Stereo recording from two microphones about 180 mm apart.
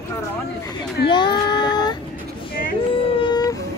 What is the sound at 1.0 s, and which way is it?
Speech, 25° left (ahead or behind).